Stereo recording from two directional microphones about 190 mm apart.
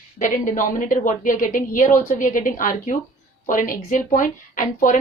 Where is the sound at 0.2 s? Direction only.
45° left (ahead or behind).